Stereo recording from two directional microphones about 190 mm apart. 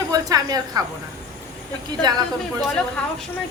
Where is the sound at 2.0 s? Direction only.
20° right (ahead or behind).